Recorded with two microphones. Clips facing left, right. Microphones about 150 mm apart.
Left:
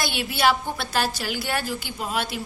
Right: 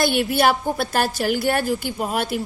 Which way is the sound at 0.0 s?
45° right (ahead or behind).